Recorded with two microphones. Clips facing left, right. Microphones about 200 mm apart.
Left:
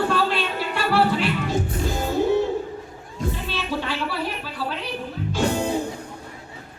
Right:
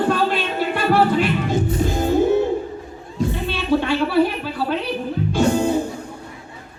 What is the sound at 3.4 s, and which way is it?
Music, 60° right (ahead or behind).